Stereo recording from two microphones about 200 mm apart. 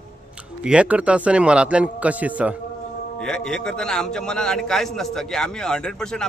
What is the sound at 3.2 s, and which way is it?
A man's voice, 5° left (ahead or behind).